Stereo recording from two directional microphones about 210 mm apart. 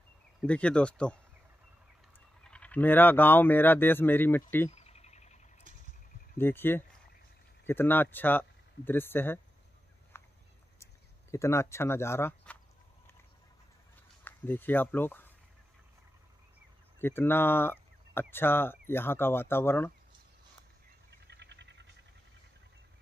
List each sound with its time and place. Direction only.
0.4 s speech: 5° left (ahead or behind)
2.4 s speech: 5° left (ahead or behind)
4.6 s a sound: 30° left (ahead or behind)
6.3 s speech: 10° left (ahead or behind)
10.1 s a sound: 10° left (ahead or behind)
10.8 s speech: 15° left (ahead or behind)
14.2 s speech: 10° left (ahead or behind)
17.0 s speech: 10° left (ahead or behind)
21.3 s a sound: 55° right (ahead or behind)